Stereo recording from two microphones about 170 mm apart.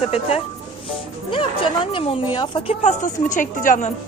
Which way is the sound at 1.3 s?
30° left (ahead or behind).